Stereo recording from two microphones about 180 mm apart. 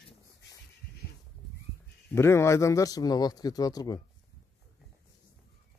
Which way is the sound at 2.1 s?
15° left (ahead or behind).